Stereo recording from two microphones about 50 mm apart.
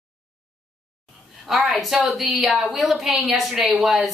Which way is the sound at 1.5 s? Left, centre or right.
Centre.